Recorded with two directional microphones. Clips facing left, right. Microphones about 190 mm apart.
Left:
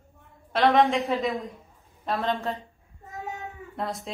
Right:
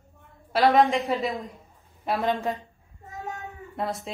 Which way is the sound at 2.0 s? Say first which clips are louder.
Right 2 dB; 10° right (ahead or behind).